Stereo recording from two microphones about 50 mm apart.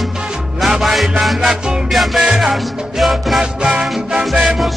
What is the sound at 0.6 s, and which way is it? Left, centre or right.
Music, centre.